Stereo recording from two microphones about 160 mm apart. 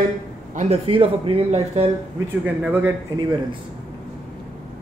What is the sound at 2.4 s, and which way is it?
Speech, 10° right (ahead or behind).